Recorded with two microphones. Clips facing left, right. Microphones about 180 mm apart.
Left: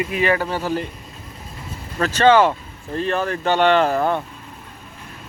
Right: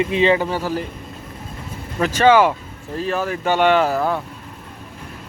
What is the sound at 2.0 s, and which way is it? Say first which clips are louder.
Speech: even; 10° right (ahead or behind).